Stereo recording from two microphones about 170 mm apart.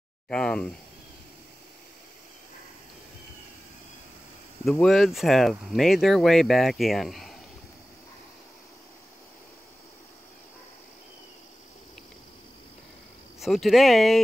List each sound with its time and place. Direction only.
0.3 s speech: 5° left (ahead or behind)
4.6 s speech: centre (ahead or behind)
13.4 s speech: centre (ahead or behind)